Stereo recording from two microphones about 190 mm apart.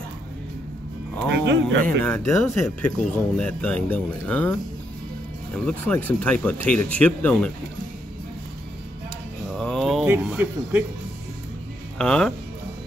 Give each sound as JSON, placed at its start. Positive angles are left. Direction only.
{"t": 1.3, "sound": "speech", "side_deg": -70}
{"t": 1.8, "sound": "speech", "side_deg": 10}
{"t": 5.7, "sound": "speech", "side_deg": 10}
{"t": 9.5, "sound": "a sound", "side_deg": 0}
{"t": 10.0, "sound": "speech", "side_deg": -10}
{"t": 12.0, "sound": "speech", "side_deg": 5}